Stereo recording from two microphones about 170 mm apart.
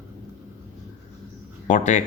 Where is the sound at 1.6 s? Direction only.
45° left (ahead or behind).